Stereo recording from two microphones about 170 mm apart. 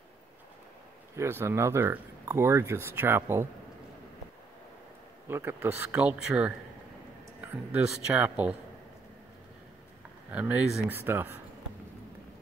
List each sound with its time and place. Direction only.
1.1 s speech: 15° right (ahead or behind)
5.3 s speech: 15° right (ahead or behind)
10.3 s speech: 10° right (ahead or behind)